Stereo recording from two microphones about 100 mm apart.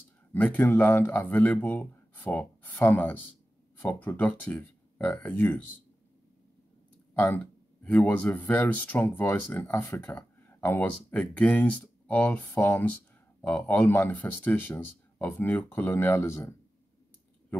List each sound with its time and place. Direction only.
0.3 s speech: 15° left (ahead or behind)
7.2 s speech: 15° left (ahead or behind)